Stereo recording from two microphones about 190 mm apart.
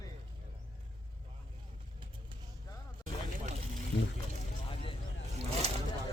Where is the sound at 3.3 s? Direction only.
40° right (ahead or behind).